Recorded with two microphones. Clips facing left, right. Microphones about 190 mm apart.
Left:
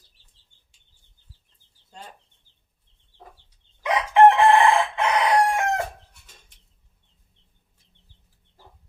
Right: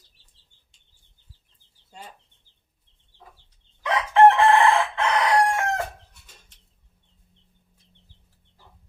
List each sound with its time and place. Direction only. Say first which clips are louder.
3.8 s chicken: left 1 dB; 15° left (ahead or behind)